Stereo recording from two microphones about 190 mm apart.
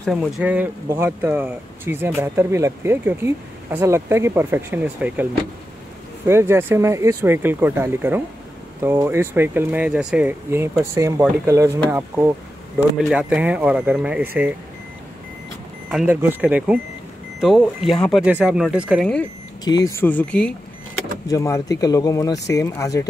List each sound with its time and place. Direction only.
0.0 s speech: centre (ahead or behind)
13.0 s speech: 5° right (ahead or behind)
15.9 s speech: 5° right (ahead or behind)
19.6 s speech: 20° left (ahead or behind)
21.3 s speech: 15° left (ahead or behind)